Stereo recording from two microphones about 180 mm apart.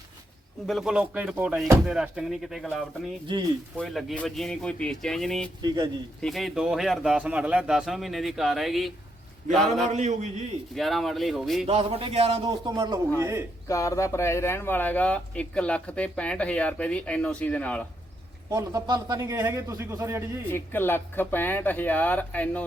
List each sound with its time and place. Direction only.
0.7 s a man's voice: centre (ahead or behind)
3.8 s a man's voice: centre (ahead or behind)
5.6 s speech: 20° right (ahead or behind)
6.2 s a man's voice: centre (ahead or behind)
9.9 s speech: 40° right (ahead or behind)
10.8 s a man's voice: centre (ahead or behind)
11.6 s a man's voice: 35° right (ahead or behind); by 13.4 s 15° right (ahead or behind)
13.7 s speech: 15° left (ahead or behind)
18.5 s a man's voice: 20° right (ahead or behind)
20.5 s speech: 10° left (ahead or behind)